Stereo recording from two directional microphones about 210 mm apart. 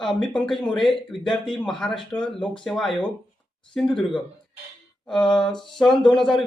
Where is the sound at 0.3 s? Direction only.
Centre (ahead or behind).